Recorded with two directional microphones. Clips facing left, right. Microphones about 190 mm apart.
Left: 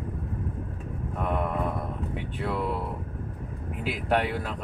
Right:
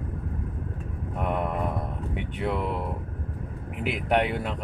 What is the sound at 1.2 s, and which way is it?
Mantra, 20° right (ahead or behind).